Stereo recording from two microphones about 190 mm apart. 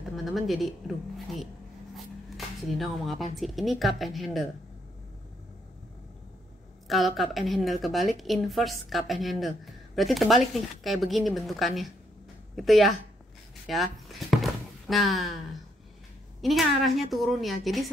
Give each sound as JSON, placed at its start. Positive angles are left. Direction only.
{"t": 0.1, "sound": "a woman's voice", "side_deg": 0}
{"t": 2.0, "sound": "a sound", "side_deg": 0}
{"t": 3.3, "sound": "speech", "side_deg": 0}
{"t": 6.9, "sound": "speech", "side_deg": 0}
{"t": 13.7, "sound": "a sound", "side_deg": 0}
{"t": 16.3, "sound": "speech", "side_deg": 0}